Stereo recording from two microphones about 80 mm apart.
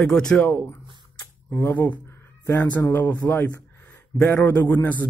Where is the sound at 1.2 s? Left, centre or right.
Left.